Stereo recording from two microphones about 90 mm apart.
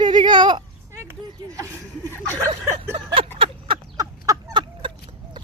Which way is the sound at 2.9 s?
75° right (ahead or behind).